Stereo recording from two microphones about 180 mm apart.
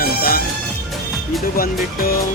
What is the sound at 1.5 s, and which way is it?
Speech, 55° left (ahead or behind).